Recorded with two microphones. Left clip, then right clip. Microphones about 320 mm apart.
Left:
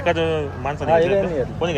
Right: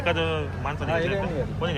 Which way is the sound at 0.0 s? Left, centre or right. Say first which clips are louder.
Left 5 dB; centre.